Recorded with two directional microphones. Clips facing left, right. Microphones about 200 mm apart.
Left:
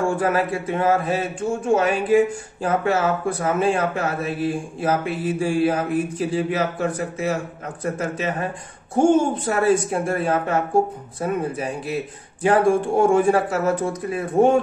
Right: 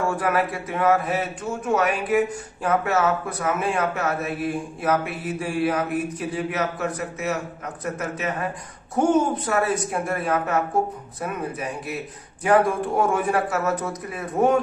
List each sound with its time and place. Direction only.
0.1 s a man's voice: 30° left (ahead or behind)